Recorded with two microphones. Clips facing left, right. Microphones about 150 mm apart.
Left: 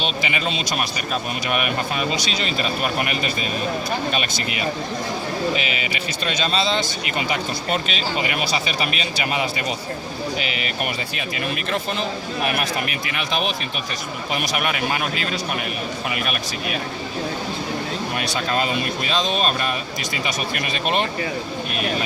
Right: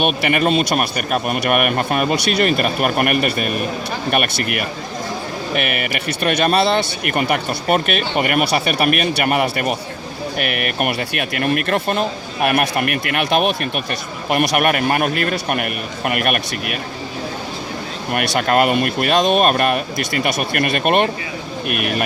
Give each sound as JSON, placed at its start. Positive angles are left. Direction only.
{"t": 0.0, "sound": "speech", "side_deg": -60}
{"t": 18.1, "sound": "speech", "side_deg": -60}